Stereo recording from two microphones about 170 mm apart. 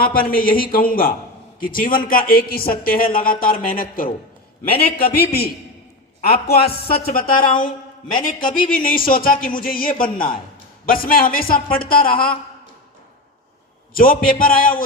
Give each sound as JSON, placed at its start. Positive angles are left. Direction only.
{"t": 0.0, "sound": "a man's voice", "side_deg": 60}
{"t": 13.9, "sound": "speech", "side_deg": 55}